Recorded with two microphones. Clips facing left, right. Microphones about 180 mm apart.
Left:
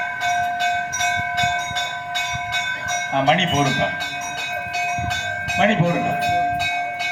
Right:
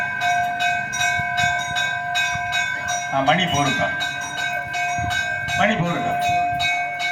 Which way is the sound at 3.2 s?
25° left (ahead or behind).